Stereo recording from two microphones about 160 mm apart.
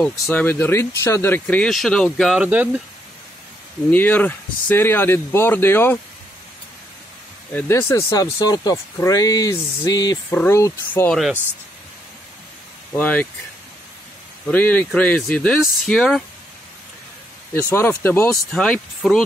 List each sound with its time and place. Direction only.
0.1 s speech: 10° left (ahead or behind); by 2.8 s 10° right (ahead or behind)
3.9 s speech: 10° left (ahead or behind)
7.5 s speech: 15° left (ahead or behind)
12.9 s speech: 10° left (ahead or behind)
14.5 s speech: 10° left (ahead or behind)
17.6 s speech: 15° left (ahead or behind)
18.5 s speech: 5° left (ahead or behind)